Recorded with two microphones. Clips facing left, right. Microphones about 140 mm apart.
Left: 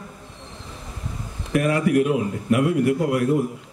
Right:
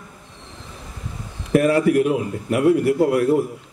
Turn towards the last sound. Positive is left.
turn(degrees=-30)  # may be behind; listen again after turning